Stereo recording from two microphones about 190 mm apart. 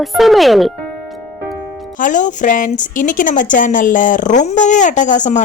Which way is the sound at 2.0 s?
40° left (ahead or behind).